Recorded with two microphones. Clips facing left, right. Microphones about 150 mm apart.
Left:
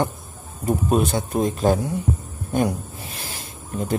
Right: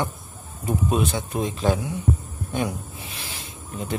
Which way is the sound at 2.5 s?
45° left (ahead or behind).